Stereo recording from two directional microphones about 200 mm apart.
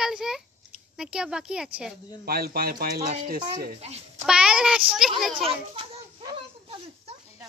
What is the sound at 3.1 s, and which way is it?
A child's voice, 35° right (ahead or behind).